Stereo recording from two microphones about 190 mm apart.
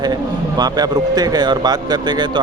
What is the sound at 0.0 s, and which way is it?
Speech, 20° right (ahead or behind).